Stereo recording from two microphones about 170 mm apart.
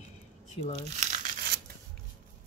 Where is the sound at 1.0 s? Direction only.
50° right (ahead or behind).